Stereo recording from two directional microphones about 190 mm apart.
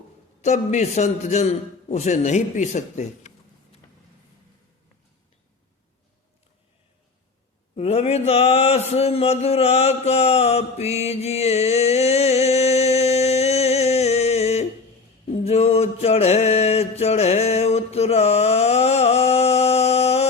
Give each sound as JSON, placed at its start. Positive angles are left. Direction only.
{"t": 0.4, "sound": "a man's voice", "side_deg": 35}
{"t": 7.8, "sound": "a man's voice", "side_deg": 35}
{"t": 15.3, "sound": "mantra", "side_deg": 35}